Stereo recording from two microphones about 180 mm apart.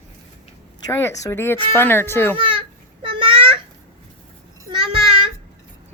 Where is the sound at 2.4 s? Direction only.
30° right (ahead or behind).